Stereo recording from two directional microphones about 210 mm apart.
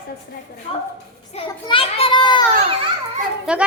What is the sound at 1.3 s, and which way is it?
A child's voice, 25° left (ahead or behind).